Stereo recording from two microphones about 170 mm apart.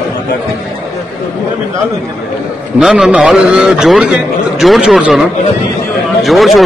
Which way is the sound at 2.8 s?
5° right (ahead or behind).